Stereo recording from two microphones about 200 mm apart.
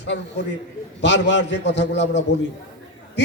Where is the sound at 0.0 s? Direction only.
60° left (ahead or behind).